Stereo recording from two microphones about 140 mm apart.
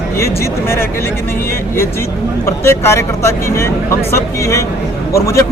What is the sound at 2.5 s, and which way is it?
Speech, 20° left (ahead or behind).